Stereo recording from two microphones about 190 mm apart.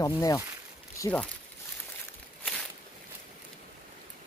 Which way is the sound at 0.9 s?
15° left (ahead or behind).